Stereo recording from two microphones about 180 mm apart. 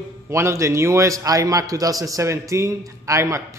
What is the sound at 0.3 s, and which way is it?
A man's voice, 15° right (ahead or behind).